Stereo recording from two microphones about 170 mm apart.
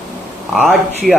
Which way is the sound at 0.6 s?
Centre (ahead or behind).